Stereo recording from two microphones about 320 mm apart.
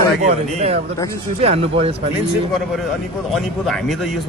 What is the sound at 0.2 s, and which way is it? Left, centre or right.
A man's voice, centre.